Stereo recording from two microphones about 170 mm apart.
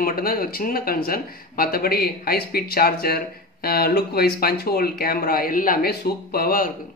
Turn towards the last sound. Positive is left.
turn(degrees=55)  # may be behind; listen again after turning